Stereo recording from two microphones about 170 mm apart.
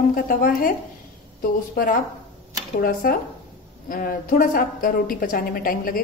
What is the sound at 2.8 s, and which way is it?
A woman's voice, 60° left (ahead or behind).